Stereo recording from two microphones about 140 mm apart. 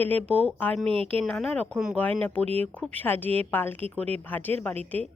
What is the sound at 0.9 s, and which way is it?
Speech, 40° right (ahead or behind).